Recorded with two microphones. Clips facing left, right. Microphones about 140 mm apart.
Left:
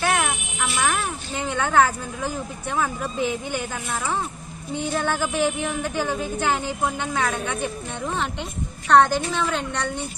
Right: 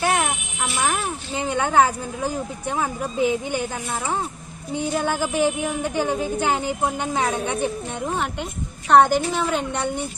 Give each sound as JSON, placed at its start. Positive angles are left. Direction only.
{"t": 0.0, "sound": "a sound", "side_deg": -25}
{"t": 1.7, "sound": "speech", "side_deg": -15}
{"t": 8.9, "sound": "speech", "side_deg": -15}